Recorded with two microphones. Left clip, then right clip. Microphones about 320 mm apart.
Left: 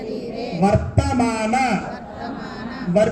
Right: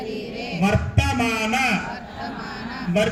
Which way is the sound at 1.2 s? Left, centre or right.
Right.